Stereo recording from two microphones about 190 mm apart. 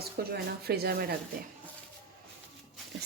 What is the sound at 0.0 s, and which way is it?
Speech, 55° right (ahead or behind).